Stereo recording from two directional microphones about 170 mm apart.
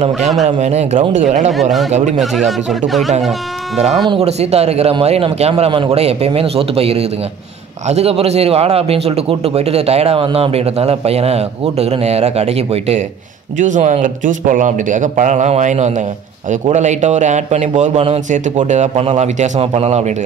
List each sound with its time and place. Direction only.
0.6 s speech: 40° right (ahead or behind)
1.5 s speech: centre (ahead or behind)
1.9 s a man's voice: 40° right (ahead or behind)
2.1 s speech: centre (ahead or behind)
4.1 s a man's voice: 40° right (ahead or behind)